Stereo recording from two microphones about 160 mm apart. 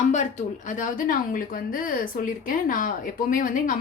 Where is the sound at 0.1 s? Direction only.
50° left (ahead or behind).